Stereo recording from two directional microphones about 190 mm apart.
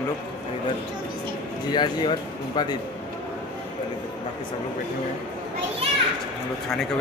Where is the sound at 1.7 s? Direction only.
25° left (ahead or behind).